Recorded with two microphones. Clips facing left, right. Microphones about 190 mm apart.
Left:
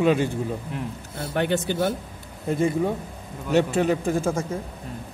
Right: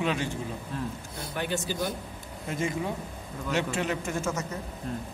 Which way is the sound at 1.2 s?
70° left (ahead or behind).